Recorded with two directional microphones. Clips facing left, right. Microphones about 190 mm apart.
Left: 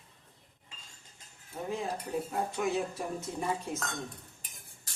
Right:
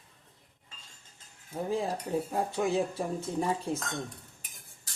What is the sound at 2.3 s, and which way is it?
Speech, 30° right (ahead or behind).